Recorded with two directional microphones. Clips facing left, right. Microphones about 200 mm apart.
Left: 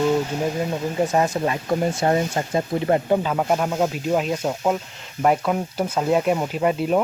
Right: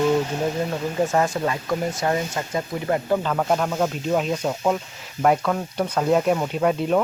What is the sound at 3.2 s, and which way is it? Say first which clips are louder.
Speech: left 1 dB; 10° left (ahead or behind).